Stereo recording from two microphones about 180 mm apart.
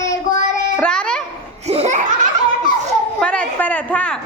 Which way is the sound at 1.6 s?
35° right (ahead or behind).